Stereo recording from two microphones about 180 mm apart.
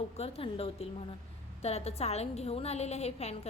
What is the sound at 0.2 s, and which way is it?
A woman's voice, 30° left (ahead or behind).